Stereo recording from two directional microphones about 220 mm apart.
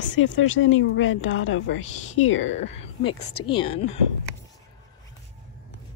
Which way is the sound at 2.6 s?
30° left (ahead or behind).